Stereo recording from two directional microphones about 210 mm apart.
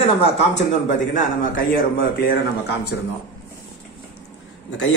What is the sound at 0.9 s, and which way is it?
A man's voice, 40° left (ahead or behind).